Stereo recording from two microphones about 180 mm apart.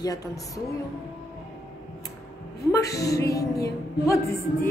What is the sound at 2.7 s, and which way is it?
Music, 15° left (ahead or behind).